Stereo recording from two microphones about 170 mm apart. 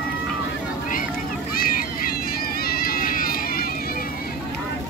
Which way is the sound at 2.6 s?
65° left (ahead or behind).